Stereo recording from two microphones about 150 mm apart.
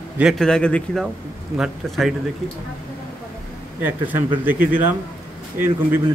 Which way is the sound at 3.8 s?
15° right (ahead or behind).